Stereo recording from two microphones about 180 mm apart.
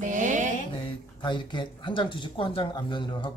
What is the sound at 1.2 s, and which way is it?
Speech, 25° left (ahead or behind).